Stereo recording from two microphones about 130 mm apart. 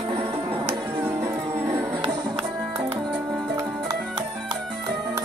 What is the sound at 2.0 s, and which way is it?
Music, 35° right (ahead or behind).